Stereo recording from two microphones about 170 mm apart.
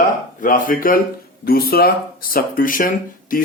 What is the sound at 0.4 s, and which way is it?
Speech, 55° left (ahead or behind).